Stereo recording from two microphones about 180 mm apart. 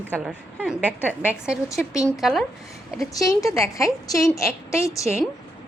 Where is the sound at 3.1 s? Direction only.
20° left (ahead or behind).